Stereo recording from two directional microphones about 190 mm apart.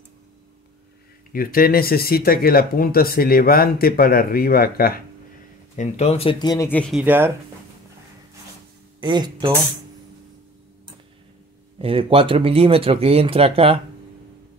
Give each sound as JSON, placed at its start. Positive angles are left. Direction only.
{"t": 1.3, "sound": "speech", "side_deg": 50}
{"t": 5.8, "sound": "speech", "side_deg": 35}
{"t": 6.7, "sound": "speech", "side_deg": 5}
{"t": 7.0, "sound": "speech", "side_deg": -10}
{"t": 9.0, "sound": "speech", "side_deg": -25}
{"t": 11.8, "sound": "speech", "side_deg": -30}